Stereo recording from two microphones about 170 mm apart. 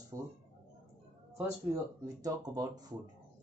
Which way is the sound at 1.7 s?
20° right (ahead or behind).